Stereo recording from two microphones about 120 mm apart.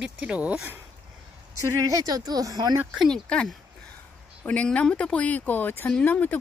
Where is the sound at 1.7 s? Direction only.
30° right (ahead or behind).